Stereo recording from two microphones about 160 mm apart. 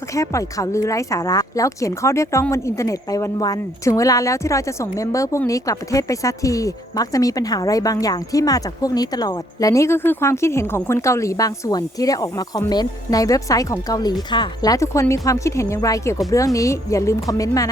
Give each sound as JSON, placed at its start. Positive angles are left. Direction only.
{"t": 0.1, "sound": "speech", "side_deg": 20}